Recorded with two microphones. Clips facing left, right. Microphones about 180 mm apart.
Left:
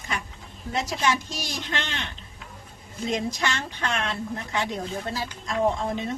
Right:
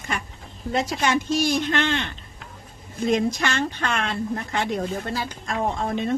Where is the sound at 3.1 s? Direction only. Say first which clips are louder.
Right 5 dB; 55° right (ahead or behind).